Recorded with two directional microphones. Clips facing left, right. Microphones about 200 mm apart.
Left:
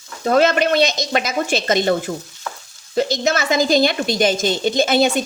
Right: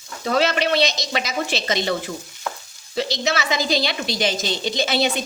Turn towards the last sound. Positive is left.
turn(degrees=50)  # may be behind; listen again after turning